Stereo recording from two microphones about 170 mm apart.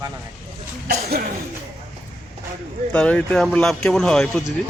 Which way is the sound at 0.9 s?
65° right (ahead or behind).